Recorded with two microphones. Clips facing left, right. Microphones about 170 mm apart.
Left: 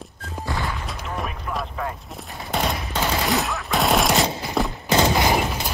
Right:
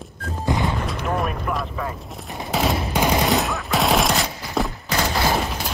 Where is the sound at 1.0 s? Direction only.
60° right (ahead or behind).